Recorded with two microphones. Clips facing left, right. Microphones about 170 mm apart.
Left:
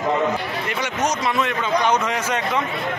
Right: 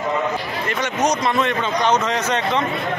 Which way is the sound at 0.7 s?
10° left (ahead or behind).